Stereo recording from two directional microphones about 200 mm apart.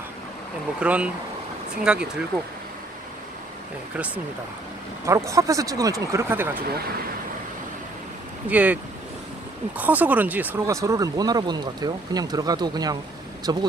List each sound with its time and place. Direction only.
0.7 s speech: 5° right (ahead or behind)
3.9 s speech: 5° right (ahead or behind)
8.5 s speech: 5° right (ahead or behind)
9.8 s speech: 10° right (ahead or behind)